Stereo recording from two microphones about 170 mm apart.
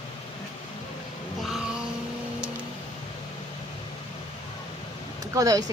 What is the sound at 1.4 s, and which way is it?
Vehicle, centre (ahead or behind).